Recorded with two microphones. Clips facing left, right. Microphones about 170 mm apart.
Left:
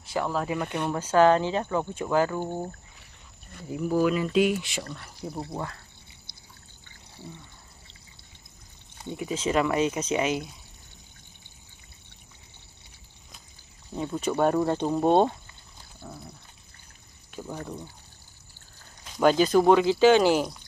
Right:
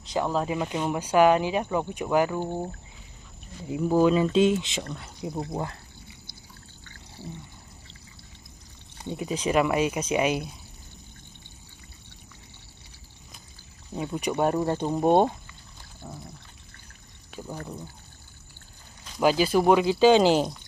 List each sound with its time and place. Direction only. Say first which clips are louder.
0.0 s speech: right 2 dB; 20° right (ahead or behind)
3.9 s speech: right 3 dB; 25° right (ahead or behind)
9.0 s speech: right 1 dB; 20° right (ahead or behind)
13.9 s speech: left 1 dB; 10° right (ahead or behind)
19.1 s speech: left 2 dB; 5° right (ahead or behind); by 20.5 s 20° right (ahead or behind)